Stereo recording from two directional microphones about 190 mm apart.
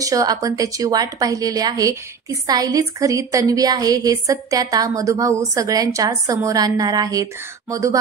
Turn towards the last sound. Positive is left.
turn(degrees=-15)  # may be behind; listen again after turning